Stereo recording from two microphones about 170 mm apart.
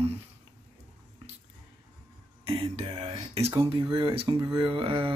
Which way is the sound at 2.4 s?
35° right (ahead or behind).